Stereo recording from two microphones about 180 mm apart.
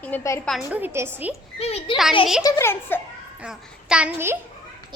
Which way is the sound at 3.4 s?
5° right (ahead or behind).